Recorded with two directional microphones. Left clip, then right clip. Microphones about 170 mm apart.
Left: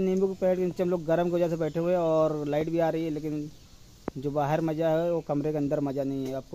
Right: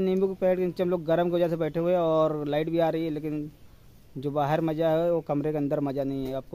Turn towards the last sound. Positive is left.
turn(degrees=-15)  # may be behind; listen again after turning